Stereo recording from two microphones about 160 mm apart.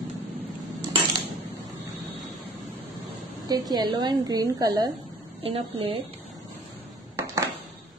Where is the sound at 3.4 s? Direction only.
25° right (ahead or behind).